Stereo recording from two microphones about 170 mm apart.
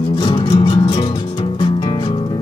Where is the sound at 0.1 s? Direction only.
25° left (ahead or behind).